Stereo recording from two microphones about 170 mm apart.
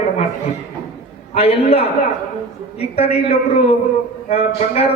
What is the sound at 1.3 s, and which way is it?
A man's voice, 35° left (ahead or behind).